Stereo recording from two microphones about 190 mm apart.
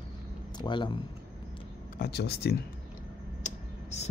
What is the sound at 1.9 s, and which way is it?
Speech, 55° left (ahead or behind).